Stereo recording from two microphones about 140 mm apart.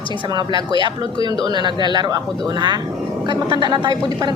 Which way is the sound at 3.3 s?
30° right (ahead or behind).